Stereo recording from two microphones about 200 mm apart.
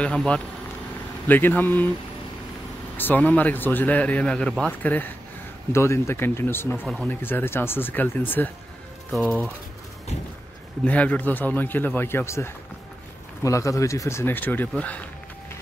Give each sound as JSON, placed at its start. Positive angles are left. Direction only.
{"t": 0.0, "sound": "speech", "side_deg": 5}
{"t": 3.0, "sound": "speech", "side_deg": 10}
{"t": 10.8, "sound": "speech", "side_deg": 5}